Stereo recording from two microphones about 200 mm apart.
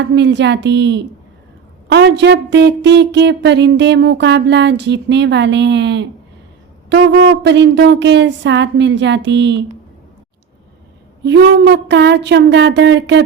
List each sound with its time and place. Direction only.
0.0 s a woman's voice: 60° right (ahead or behind)
11.2 s a woman's voice: 60° right (ahead or behind)